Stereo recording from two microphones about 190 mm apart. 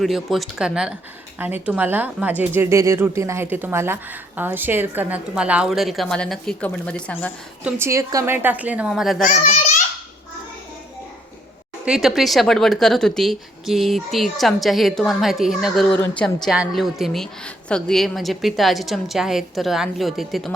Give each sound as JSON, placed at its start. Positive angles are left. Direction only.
{"t": 0.0, "sound": "a woman's voice", "side_deg": 0}
{"t": 7.6, "sound": "speech", "side_deg": -15}
{"t": 9.2, "sound": "a child's voice", "side_deg": 40}
{"t": 11.9, "sound": "a woman's voice", "side_deg": 0}